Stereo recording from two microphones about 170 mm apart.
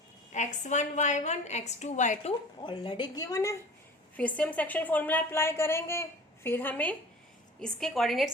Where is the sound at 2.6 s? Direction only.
30° left (ahead or behind).